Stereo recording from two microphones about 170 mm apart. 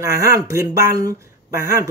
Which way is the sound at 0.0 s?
15° right (ahead or behind).